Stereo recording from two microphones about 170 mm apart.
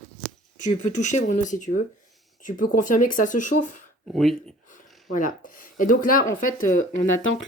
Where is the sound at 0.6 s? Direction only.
45° left (ahead or behind).